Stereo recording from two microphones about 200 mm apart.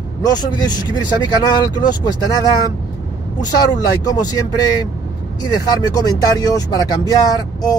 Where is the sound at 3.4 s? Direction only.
20° left (ahead or behind).